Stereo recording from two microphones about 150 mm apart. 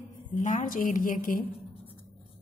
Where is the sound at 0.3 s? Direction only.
55° left (ahead or behind).